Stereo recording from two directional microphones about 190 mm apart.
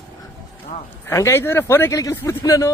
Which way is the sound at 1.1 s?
15° left (ahead or behind).